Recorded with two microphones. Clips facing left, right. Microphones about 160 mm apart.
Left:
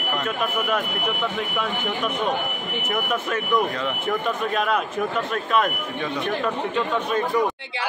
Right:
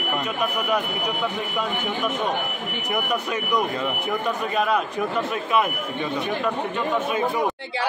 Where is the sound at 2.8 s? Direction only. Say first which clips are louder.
Even; centre (ahead or behind).